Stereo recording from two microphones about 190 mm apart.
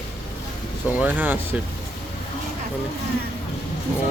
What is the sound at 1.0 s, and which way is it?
Speech, 10° right (ahead or behind).